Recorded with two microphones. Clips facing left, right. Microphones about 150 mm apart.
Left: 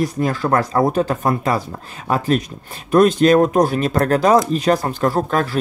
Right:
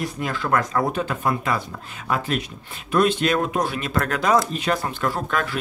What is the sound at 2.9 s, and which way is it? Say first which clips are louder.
Speech: left 8 dB; 40° left (ahead or behind).